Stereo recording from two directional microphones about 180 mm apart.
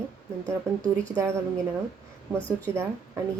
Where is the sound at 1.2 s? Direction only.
15° right (ahead or behind).